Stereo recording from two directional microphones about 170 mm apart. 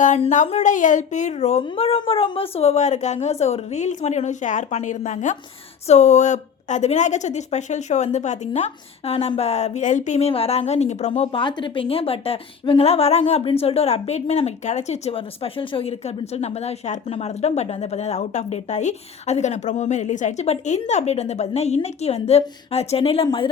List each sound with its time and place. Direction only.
0.0 s a woman's voice: 45° left (ahead or behind); by 23.5 s 30° left (ahead or behind)